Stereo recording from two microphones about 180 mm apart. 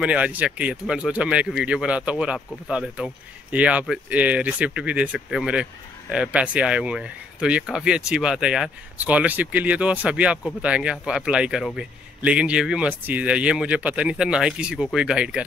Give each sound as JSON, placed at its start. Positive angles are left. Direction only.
{"t": 0.0, "sound": "speech", "side_deg": -10}